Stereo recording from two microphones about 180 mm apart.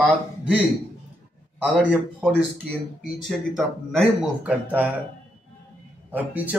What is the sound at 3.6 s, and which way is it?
Speech, 5° right (ahead or behind).